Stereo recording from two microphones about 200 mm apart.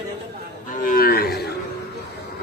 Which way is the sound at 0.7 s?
45° left (ahead or behind).